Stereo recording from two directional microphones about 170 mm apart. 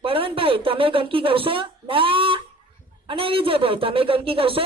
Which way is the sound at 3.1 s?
30° right (ahead or behind).